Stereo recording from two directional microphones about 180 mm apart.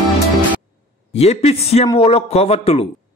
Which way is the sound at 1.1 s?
35° left (ahead or behind).